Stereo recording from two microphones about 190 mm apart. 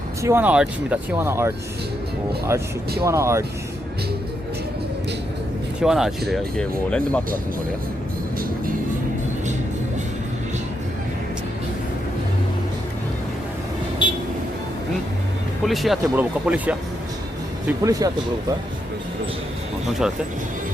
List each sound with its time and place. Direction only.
0.2 s speech: 15° right (ahead or behind)
3.0 s speech: 15° right (ahead or behind)
5.8 s speech: centre (ahead or behind)
14.0 s vehicle: 25° left (ahead or behind)
15.6 s speech: centre (ahead or behind); by 18.1 s 15° right (ahead or behind)